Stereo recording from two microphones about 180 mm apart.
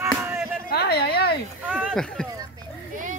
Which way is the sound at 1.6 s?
5° right (ahead or behind).